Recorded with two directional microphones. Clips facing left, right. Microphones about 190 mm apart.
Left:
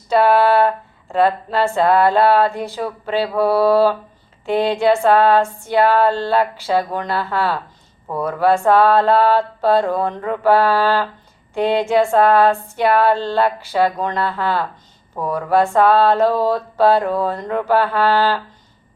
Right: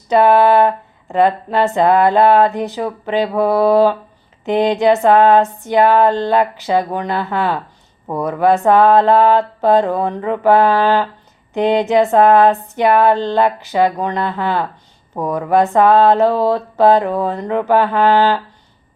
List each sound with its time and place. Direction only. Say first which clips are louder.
0.1 s speech: right 3 dB; 15° right (ahead or behind)